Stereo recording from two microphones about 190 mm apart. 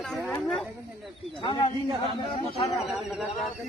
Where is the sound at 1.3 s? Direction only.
25° left (ahead or behind).